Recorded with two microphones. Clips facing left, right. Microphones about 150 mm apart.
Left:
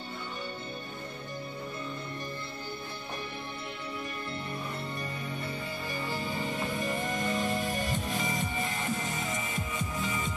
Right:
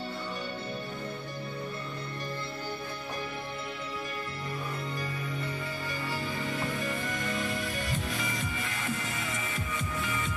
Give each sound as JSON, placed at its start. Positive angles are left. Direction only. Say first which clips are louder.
{"t": 6.2, "sound": "music", "louder": "even", "side_deg": 25}